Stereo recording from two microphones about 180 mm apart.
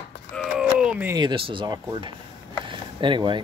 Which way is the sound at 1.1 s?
25° right (ahead or behind).